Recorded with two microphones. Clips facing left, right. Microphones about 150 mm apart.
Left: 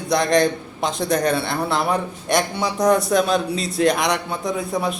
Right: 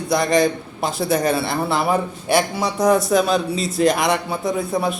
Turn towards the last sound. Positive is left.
turn(degrees=0)  # may be behind; listen again after turning